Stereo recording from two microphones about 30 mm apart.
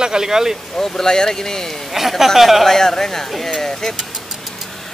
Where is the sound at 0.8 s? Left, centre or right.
Centre.